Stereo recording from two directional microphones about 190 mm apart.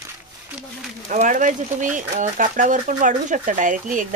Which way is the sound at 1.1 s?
45° right (ahead or behind).